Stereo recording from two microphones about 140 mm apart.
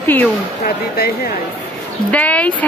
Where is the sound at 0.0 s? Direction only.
15° left (ahead or behind).